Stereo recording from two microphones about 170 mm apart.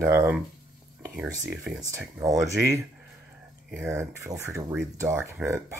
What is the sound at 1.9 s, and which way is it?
Speech, 15° right (ahead or behind).